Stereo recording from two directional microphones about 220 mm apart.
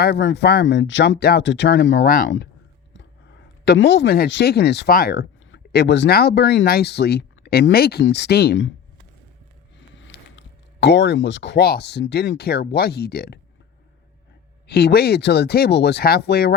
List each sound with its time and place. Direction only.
0.0 s speech: 55° left (ahead or behind)
3.7 s speech: 50° left (ahead or behind)
9.9 s speech: 55° left (ahead or behind)
14.7 s speech: 45° left (ahead or behind)